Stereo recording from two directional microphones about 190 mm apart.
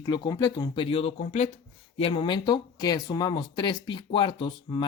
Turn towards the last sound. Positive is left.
turn(degrees=25)  # may be behind; listen again after turning